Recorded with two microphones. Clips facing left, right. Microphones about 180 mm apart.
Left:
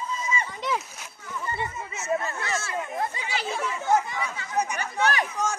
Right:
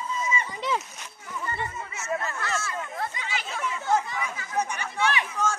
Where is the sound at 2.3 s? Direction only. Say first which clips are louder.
Even; 30° left (ahead or behind).